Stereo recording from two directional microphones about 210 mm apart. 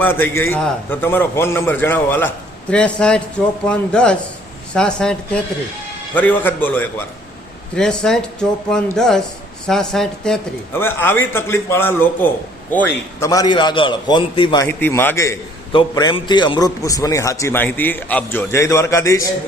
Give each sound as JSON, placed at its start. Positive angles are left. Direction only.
{"t": 0.0, "sound": "a man's voice", "side_deg": 10}
{"t": 14.7, "sound": "a man's voice", "side_deg": 10}